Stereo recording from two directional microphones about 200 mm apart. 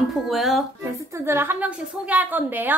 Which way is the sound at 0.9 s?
15° right (ahead or behind).